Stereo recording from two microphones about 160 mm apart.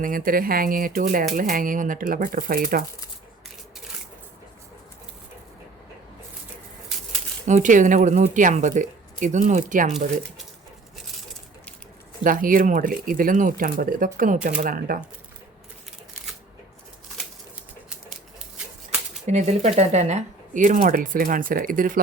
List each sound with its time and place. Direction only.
0.0 s speech: 60° right (ahead or behind)
7.4 s speech: 50° right (ahead or behind)
12.2 s speech: 60° right (ahead or behind)
19.3 s speech: 45° right (ahead or behind); by 22.0 s 60° right (ahead or behind)